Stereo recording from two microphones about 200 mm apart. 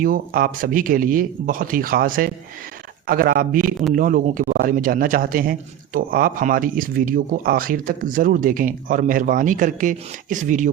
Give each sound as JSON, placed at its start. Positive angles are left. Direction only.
{"t": 0.0, "sound": "a man's voice", "side_deg": -45}
{"t": 3.6, "sound": "a man's voice", "side_deg": 0}
{"t": 3.9, "sound": "a man's voice", "side_deg": -40}